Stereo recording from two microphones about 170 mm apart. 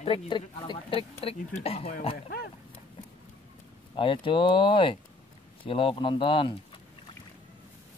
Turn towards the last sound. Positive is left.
turn(degrees=30)  # may be behind; listen again after turning